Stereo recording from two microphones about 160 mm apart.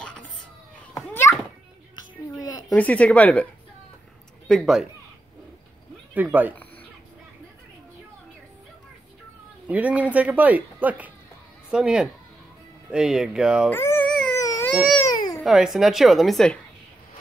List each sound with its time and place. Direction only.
0.0 s whispering: 5° left (ahead or behind)
0.9 s children playing: 15° left (ahead or behind)
2.0 s music: 20° left (ahead or behind)
2.7 s speech: 10° left (ahead or behind)
4.5 s a woman's voice: centre (ahead or behind)
6.1 s speech: 10° right (ahead or behind)
9.7 s a woman's voice: 10° right (ahead or behind)
13.7 s a sound: 15° left (ahead or behind)
14.4 s baby cry: 20° left (ahead or behind)
15.4 s a woman's voice: centre (ahead or behind)